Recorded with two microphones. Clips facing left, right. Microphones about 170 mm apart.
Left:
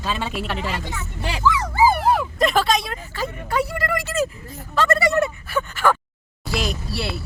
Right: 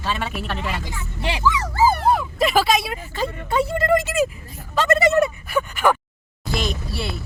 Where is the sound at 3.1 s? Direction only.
25° right (ahead or behind).